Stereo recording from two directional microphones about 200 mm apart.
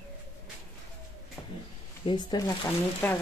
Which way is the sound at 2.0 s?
20° left (ahead or behind).